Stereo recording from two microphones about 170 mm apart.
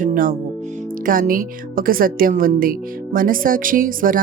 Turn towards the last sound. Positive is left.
turn(degrees=-55)  # may be behind; listen again after turning